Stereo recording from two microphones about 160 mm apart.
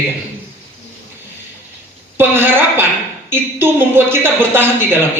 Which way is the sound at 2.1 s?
15° right (ahead or behind).